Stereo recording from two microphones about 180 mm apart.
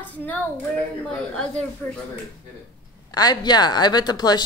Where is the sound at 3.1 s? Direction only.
20° left (ahead or behind).